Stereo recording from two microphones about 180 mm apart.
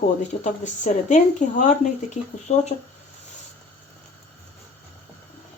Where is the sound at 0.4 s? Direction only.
40° left (ahead or behind).